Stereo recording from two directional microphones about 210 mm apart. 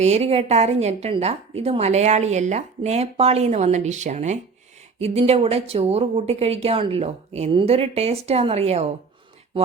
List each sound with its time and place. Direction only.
0.0 s a woman's voice: 30° right (ahead or behind)